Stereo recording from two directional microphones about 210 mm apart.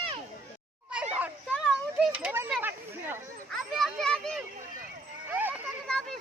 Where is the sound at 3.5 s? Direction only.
Centre (ahead or behind).